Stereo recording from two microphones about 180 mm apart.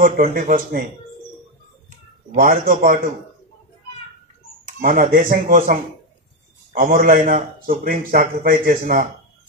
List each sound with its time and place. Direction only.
0.3 s speech: 50° right (ahead or behind)
2.3 s speech: 50° right (ahead or behind)
4.7 s speech: 50° right (ahead or behind)